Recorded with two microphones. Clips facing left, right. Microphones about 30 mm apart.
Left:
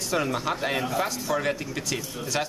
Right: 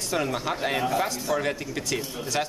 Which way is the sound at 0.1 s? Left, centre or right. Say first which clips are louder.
Left 1 dB; centre.